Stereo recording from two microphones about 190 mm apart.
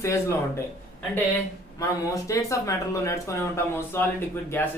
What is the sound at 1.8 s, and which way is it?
Speech, 15° left (ahead or behind).